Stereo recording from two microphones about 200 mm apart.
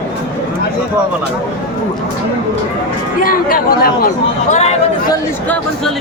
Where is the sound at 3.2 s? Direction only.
45° left (ahead or behind).